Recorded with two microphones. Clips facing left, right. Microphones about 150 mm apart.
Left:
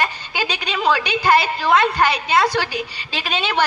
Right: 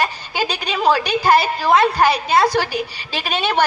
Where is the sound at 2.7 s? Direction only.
5° right (ahead or behind).